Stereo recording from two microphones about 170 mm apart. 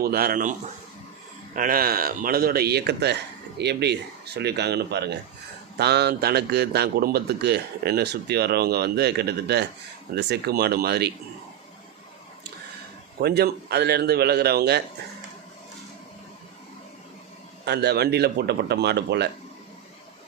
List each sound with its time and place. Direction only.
0.0 s speech: 60° right (ahead or behind)
1.5 s a man's voice: 55° right (ahead or behind); by 11.1 s 70° right (ahead or behind)
13.1 s a man's voice: 70° right (ahead or behind)
17.7 s a man's voice: 75° right (ahead or behind)